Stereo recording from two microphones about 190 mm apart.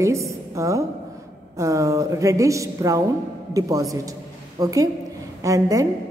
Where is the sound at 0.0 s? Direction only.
15° right (ahead or behind).